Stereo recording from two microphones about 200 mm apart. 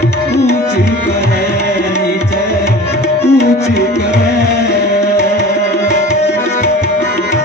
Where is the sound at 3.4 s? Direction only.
55° left (ahead or behind).